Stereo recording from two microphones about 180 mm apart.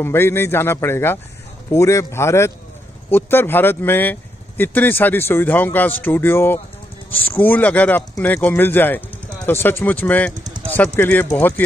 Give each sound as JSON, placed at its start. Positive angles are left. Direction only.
{"t": 0.0, "sound": "speech", "side_deg": 15}
{"t": 10.3, "sound": "a sound", "side_deg": -20}
{"t": 11.0, "sound": "speech", "side_deg": 10}